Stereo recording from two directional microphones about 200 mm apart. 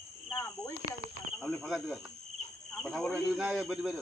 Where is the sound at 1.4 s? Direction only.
Centre (ahead or behind).